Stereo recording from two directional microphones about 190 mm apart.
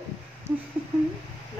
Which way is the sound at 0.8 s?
5° right (ahead or behind).